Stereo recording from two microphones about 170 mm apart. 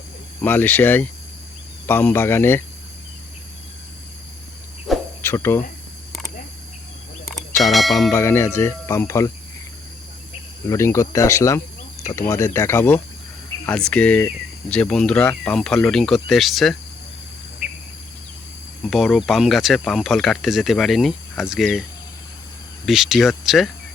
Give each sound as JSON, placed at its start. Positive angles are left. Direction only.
{"t": 0.4, "sound": "speech", "side_deg": 10}
{"t": 4.9, "sound": "cricket", "side_deg": 0}
{"t": 5.2, "sound": "speech", "side_deg": 15}
{"t": 7.6, "sound": "speech", "side_deg": 0}
{"t": 8.1, "sound": "speech", "side_deg": 15}
{"t": 10.7, "sound": "speech", "side_deg": 15}
{"t": 18.8, "sound": "speech", "side_deg": 0}
{"t": 22.9, "sound": "speech", "side_deg": 0}